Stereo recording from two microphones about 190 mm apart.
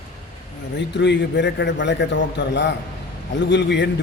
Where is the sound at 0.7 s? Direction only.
65° left (ahead or behind).